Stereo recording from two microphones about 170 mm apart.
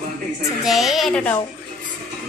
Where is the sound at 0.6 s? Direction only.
Centre (ahead or behind).